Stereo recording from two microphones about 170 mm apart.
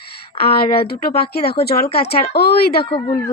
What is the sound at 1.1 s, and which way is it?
Speech, 65° left (ahead or behind).